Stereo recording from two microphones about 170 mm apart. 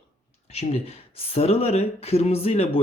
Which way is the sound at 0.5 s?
35° left (ahead or behind).